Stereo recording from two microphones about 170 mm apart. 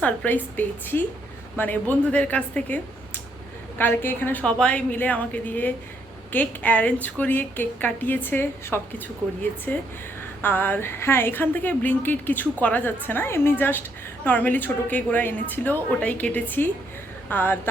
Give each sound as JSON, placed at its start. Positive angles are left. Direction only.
{"t": 0.0, "sound": "a woman's voice", "side_deg": 10}